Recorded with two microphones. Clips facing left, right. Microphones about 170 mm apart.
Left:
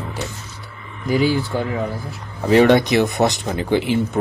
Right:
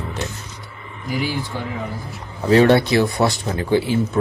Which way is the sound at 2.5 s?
15° left (ahead or behind).